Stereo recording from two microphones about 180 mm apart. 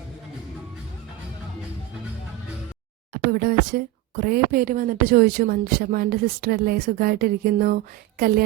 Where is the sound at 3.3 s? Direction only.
55° right (ahead or behind).